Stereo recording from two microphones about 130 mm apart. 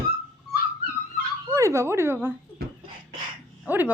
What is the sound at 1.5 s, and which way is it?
Speech, 20° right (ahead or behind).